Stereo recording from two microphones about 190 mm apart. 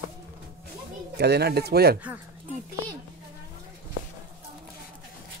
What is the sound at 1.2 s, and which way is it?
Speech, 60° right (ahead or behind).